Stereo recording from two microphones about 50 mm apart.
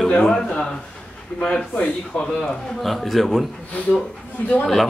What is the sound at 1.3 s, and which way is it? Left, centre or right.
Speech, left.